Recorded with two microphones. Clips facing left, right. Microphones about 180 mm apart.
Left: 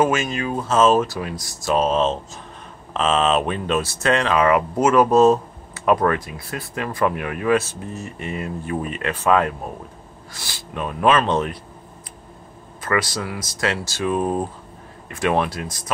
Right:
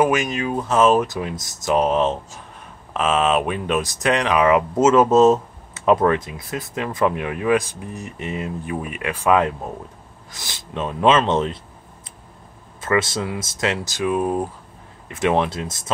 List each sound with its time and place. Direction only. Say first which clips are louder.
0.0 s speech: right 1 dB; 15° right (ahead or behind)
12.8 s speech: right 2 dB; 25° right (ahead or behind); by 14.5 s 10° right (ahead or behind)
15.0 s speech: right 1 dB; 20° right (ahead or behind)